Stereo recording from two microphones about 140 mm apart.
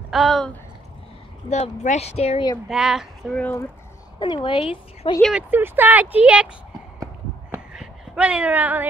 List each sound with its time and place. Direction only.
0.1 s speech: centre (ahead or behind)
1.5 s speech: 55° left (ahead or behind)
2.7 s speech: 5° right (ahead or behind)
4.2 s a woman's voice: 35° left (ahead or behind)
5.3 s speech: 15° right (ahead or behind)
7.7 s a sound: 5° right (ahead or behind)